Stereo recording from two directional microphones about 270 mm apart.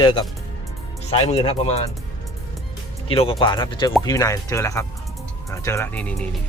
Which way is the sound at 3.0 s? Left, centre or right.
Left.